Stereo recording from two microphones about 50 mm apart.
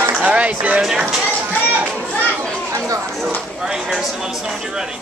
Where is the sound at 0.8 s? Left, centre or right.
Centre.